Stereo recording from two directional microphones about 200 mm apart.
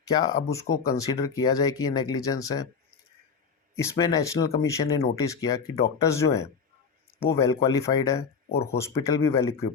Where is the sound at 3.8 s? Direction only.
15° left (ahead or behind).